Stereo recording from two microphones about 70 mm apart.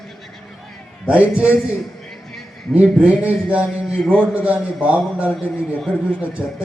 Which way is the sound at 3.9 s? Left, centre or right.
Centre.